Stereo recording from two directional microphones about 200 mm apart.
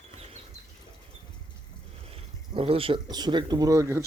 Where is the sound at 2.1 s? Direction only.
30° right (ahead or behind).